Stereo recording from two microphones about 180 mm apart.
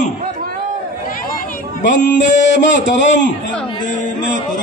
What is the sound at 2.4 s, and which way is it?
Speech, 85° left.